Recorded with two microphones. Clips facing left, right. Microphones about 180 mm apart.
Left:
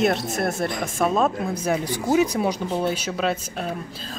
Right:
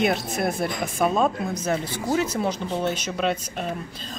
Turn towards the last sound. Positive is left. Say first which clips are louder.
# left 1 dB
turn(degrees=5)  # may be behind; listen again after turning